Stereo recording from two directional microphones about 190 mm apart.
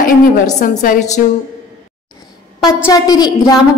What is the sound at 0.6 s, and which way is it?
Speech, 40° left (ahead or behind).